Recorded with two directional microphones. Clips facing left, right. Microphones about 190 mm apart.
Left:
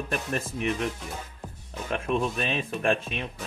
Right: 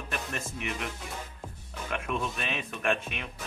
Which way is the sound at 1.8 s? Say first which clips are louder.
Left 5 dB; 30° left (ahead or behind).